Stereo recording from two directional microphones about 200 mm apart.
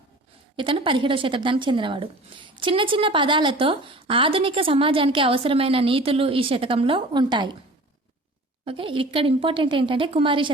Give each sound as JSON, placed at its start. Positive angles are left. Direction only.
{"t": 0.5, "sound": "speech", "side_deg": -25}
{"t": 8.6, "sound": "speech", "side_deg": -25}